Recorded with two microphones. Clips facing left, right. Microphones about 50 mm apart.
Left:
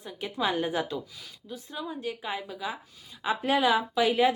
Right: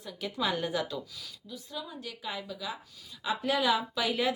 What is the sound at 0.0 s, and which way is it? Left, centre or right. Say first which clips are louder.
Speech: left 3 dB; left.